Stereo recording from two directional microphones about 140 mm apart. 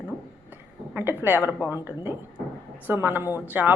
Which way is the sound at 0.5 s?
15° right (ahead or behind).